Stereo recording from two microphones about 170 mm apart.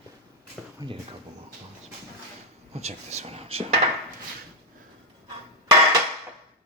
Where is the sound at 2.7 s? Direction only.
40° right (ahead or behind).